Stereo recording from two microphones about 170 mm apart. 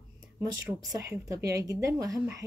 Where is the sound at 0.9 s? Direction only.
20° right (ahead or behind).